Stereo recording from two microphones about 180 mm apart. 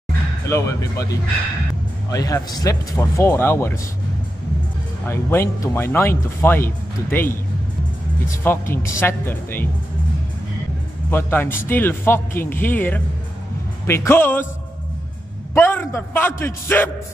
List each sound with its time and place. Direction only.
0.5 s speech: 15° left (ahead or behind)
5.0 s speech: 15° left (ahead or behind)
8.3 s speech: 15° left (ahead or behind)
11.1 s speech: 10° left (ahead or behind)
15.5 s speech: 10° left (ahead or behind)